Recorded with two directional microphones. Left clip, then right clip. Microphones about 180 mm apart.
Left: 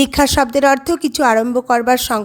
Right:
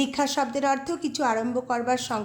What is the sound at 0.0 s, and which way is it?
A woman's voice, 45° left (ahead or behind).